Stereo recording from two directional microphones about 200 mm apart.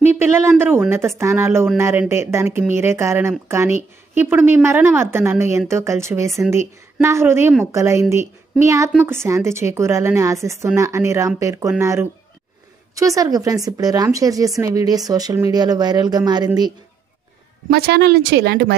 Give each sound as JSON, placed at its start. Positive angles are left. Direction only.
{"t": 0.0, "sound": "a woman's voice", "side_deg": -10}
{"t": 17.6, "sound": "speech", "side_deg": -50}